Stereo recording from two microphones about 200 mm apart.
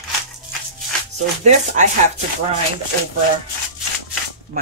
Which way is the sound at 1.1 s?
35° right (ahead or behind).